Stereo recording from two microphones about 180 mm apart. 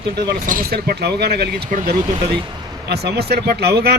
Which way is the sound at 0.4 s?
50° right (ahead or behind).